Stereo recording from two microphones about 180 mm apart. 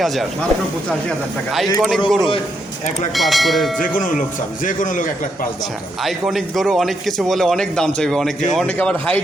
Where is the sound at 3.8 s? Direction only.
45° left (ahead or behind).